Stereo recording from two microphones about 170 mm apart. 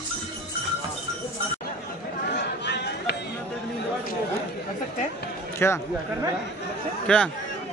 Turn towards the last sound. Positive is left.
turn(degrees=5)  # may be behind; listen again after turning